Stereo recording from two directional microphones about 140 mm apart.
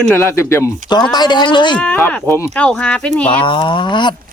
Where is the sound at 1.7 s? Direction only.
10° left (ahead or behind).